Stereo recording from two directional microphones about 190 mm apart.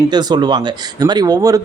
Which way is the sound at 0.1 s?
20° right (ahead or behind).